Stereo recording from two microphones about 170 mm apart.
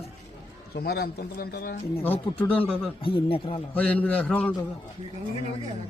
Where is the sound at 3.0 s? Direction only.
30° left (ahead or behind).